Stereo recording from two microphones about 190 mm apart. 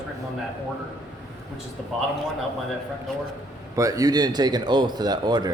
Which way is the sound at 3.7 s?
20° right (ahead or behind).